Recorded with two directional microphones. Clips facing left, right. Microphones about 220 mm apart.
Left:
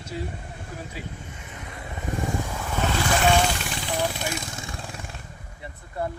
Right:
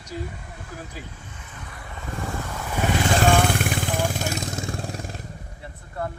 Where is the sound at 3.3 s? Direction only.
55° right (ahead or behind); by 5.2 s 40° right (ahead or behind).